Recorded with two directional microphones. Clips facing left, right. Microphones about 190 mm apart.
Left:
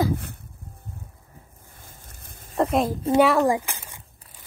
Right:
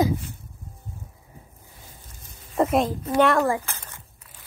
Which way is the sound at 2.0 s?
55° left (ahead or behind).